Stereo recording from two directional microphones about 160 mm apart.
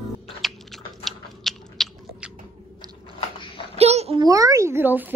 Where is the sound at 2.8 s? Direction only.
25° right (ahead or behind).